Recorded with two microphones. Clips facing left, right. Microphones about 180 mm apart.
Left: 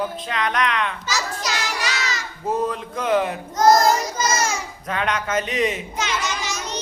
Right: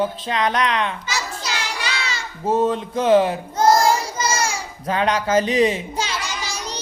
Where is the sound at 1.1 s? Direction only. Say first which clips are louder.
Left 1 dB; 30° right (ahead or behind).